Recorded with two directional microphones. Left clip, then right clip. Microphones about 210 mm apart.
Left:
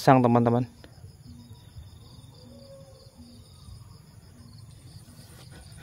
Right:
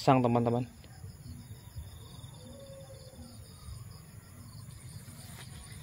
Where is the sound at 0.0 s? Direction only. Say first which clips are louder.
Left 7 dB; 45° left (ahead or behind).